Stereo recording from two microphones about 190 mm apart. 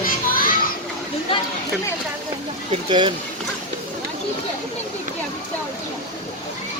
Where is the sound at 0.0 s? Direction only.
50° left (ahead or behind).